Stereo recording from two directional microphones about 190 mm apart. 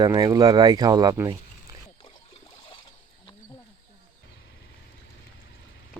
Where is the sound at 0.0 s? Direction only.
20° right (ahead or behind).